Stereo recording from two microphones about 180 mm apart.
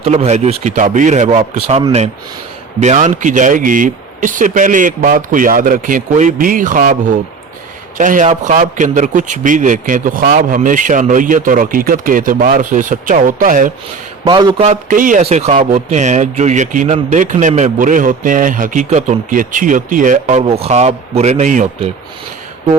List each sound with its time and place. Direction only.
0.0 s speech: 35° right (ahead or behind)
2.8 s speech: 40° right (ahead or behind)
7.9 s speech: 45° right (ahead or behind)
14.3 s speech: 25° right (ahead or behind)
14.6 s speech: 45° right (ahead or behind)
15.2 s speech: 35° right (ahead or behind)